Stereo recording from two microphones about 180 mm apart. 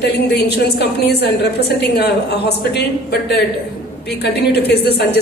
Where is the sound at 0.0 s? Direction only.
65° left (ahead or behind).